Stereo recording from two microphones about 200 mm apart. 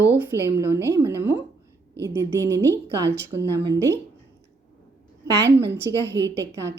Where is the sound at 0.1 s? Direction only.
10° right (ahead or behind).